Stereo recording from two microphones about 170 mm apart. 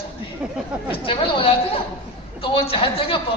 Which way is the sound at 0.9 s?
30° left (ahead or behind).